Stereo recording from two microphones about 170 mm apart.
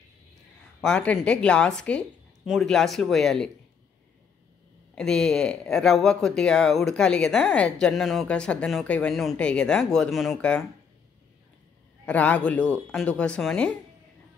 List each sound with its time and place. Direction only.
0.7 s speech: 5° left (ahead or behind)
4.9 s speech: 5° left (ahead or behind)
12.1 s speech: 10° left (ahead or behind)